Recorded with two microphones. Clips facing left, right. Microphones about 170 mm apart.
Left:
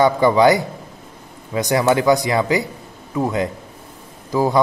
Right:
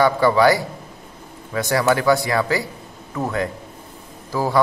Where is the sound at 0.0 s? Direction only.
20° left (ahead or behind).